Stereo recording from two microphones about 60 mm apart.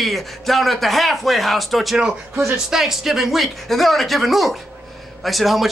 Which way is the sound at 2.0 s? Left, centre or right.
Centre.